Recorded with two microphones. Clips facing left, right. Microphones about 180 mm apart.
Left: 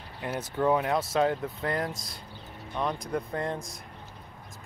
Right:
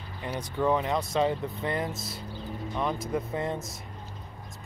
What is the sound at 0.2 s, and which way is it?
Speech, 5° left (ahead or behind).